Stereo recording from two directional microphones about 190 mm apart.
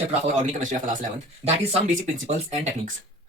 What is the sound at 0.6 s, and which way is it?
Speech, 40° right (ahead or behind).